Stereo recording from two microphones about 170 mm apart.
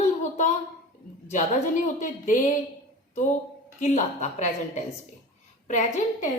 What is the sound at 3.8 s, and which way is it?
A woman's voice, 40° left (ahead or behind).